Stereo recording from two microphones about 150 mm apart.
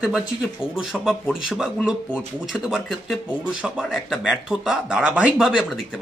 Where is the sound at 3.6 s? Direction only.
5° right (ahead or behind).